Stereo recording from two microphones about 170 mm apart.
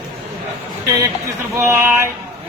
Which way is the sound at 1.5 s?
15° right (ahead or behind).